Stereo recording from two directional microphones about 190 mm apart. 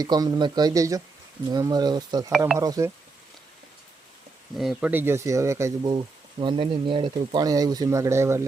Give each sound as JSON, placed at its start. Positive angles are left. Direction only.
{"t": 0.0, "sound": "speech", "side_deg": -20}
{"t": 4.5, "sound": "speech", "side_deg": 0}